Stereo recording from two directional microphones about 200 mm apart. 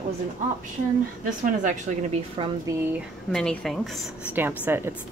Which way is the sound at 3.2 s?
5° left (ahead or behind).